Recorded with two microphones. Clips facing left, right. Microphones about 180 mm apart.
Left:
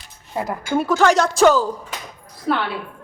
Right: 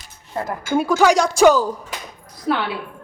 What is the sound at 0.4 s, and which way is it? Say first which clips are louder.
Speech: left 1 dB; 10° left (ahead or behind).